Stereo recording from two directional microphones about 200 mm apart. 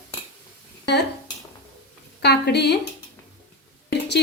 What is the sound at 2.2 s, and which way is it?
Speech, 55° left (ahead or behind).